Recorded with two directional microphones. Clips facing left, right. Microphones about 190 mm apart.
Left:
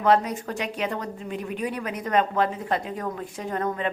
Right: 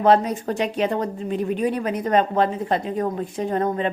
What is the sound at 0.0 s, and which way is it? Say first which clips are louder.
A woman's voice: right 4 dB; 30° right (ahead or behind).